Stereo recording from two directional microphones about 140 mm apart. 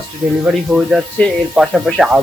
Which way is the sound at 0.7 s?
Centre (ahead or behind).